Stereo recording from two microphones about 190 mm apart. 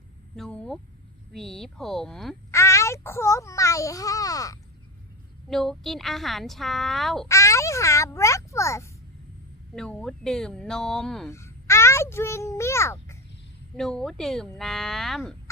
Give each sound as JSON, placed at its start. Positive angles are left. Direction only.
{"t": 0.3, "sound": "a woman's voice", "side_deg": 5}
{"t": 2.5, "sound": "a child's voice", "side_deg": 15}
{"t": 5.5, "sound": "a woman's voice", "side_deg": 0}
{"t": 7.3, "sound": "a child's voice", "side_deg": 15}
{"t": 9.7, "sound": "a woman's voice", "side_deg": 5}
{"t": 11.3, "sound": "a child's voice", "side_deg": 15}
{"t": 13.7, "sound": "a woman's voice", "side_deg": 0}